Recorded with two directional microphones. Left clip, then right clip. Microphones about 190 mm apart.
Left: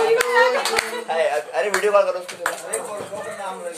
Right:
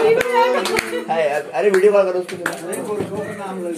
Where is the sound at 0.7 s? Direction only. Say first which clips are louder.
Right 2 dB; 10° left (ahead or behind).